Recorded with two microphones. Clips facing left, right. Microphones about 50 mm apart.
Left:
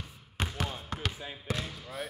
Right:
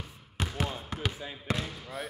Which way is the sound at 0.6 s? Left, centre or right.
Centre.